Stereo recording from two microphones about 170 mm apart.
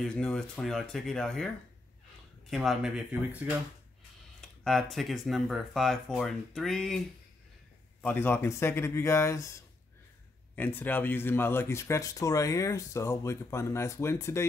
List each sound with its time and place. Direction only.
0.0 s speech: 5° left (ahead or behind)
2.5 s speech: centre (ahead or behind)
8.0 s speech: 10° left (ahead or behind)